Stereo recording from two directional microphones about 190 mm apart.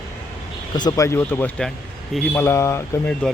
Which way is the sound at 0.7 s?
20° left (ahead or behind).